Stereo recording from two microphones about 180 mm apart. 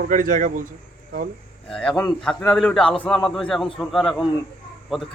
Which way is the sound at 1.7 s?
5° left (ahead or behind).